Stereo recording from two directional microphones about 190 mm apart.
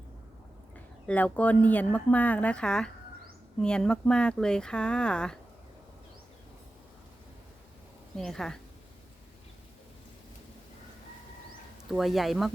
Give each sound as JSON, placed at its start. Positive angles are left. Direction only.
{"t": 1.0, "sound": "speech", "side_deg": 10}
{"t": 8.1, "sound": "speech", "side_deg": 5}
{"t": 11.9, "sound": "speech", "side_deg": 0}